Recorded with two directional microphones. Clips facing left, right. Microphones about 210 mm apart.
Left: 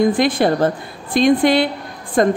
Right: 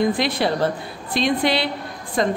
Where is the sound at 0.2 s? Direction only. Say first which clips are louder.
Left 5 dB; 50° left (ahead or behind).